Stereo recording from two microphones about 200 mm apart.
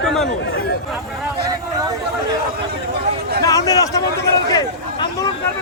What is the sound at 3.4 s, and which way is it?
Speech, 20° left (ahead or behind).